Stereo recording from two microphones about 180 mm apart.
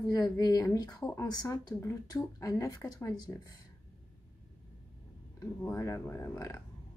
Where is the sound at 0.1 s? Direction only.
20° left (ahead or behind).